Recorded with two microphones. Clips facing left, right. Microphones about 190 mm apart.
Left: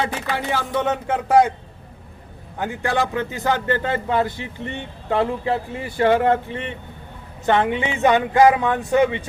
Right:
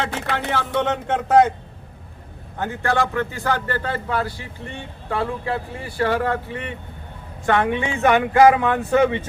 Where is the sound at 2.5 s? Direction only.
15° left (ahead or behind).